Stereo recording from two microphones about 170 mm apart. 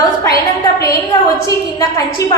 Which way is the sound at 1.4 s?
20° left (ahead or behind).